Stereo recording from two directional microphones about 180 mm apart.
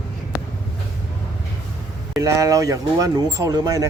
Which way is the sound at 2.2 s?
20° right (ahead or behind).